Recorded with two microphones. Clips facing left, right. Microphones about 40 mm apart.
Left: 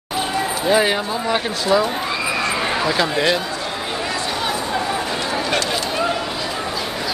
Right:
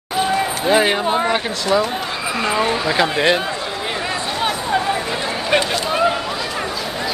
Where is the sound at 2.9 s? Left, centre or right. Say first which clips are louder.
Right 2 dB; centre.